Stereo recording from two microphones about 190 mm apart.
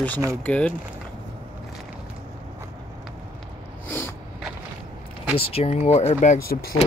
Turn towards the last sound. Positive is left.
turn(degrees=45)  # may be behind; listen again after turning